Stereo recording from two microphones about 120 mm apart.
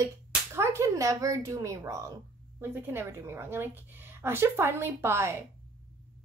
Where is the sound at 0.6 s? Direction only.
25° right (ahead or behind).